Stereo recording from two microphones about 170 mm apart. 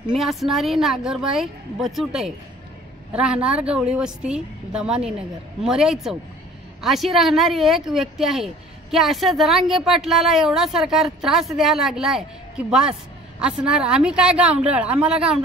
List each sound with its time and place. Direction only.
0.1 s a woman's voice: centre (ahead or behind)